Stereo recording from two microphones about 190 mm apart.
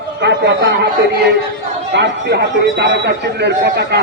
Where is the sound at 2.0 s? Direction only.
65° right (ahead or behind).